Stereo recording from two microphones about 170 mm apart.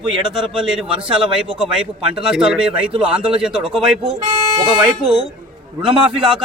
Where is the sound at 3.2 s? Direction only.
30° right (ahead or behind).